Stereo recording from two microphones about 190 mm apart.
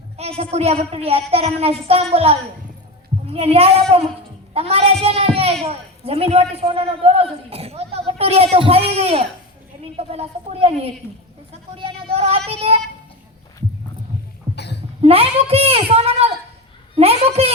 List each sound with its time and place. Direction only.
0.2 s a woman's voice: 35° right (ahead or behind)
12.1 s child singing: 30° right (ahead or behind)
12.6 s speech: 35° right (ahead or behind)
14.5 s cough: 60° left (ahead or behind)
15.0 s a man's voice: 30° right (ahead or behind)